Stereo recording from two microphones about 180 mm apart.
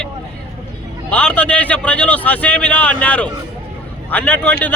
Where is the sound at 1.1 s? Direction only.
5° left (ahead or behind).